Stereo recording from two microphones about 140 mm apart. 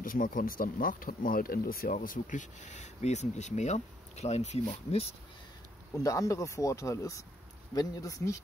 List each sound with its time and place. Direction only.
0.0 s speech: 80° left; by 5.1 s 45° left (ahead or behind)
5.9 s speech: 25° left (ahead or behind)